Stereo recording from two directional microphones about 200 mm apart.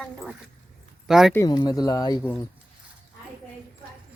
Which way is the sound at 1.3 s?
20° left (ahead or behind).